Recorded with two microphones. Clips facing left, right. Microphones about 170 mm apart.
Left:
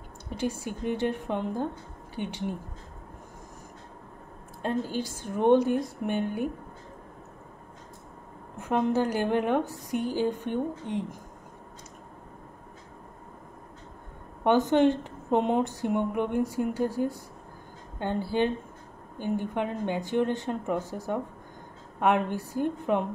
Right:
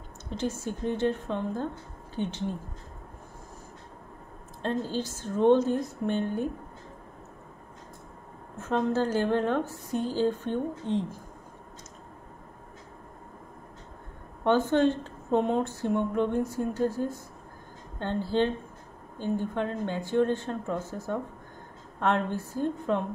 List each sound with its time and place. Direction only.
0.3 s speech: 10° left (ahead or behind)
4.6 s speech: 10° left (ahead or behind)
8.5 s speech: 15° left (ahead or behind)
14.4 s speech: 15° left (ahead or behind)